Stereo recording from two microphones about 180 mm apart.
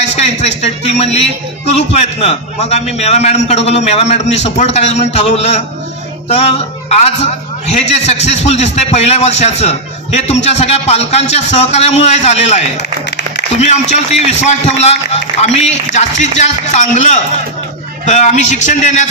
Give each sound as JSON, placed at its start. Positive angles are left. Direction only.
{"t": 0.1, "sound": "a sound", "side_deg": 40}
{"t": 1.7, "sound": "a man's voice", "side_deg": 35}
{"t": 14.4, "sound": "a man's voice", "side_deg": 40}